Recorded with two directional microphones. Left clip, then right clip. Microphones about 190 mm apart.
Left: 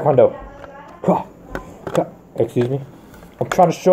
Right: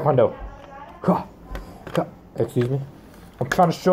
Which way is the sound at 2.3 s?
Centre (ahead or behind).